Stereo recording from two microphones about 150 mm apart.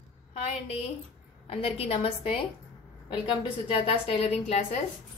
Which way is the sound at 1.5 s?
40° left (ahead or behind).